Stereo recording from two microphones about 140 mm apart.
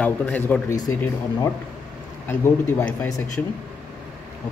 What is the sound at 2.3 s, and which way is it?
Speech, 20° left (ahead or behind).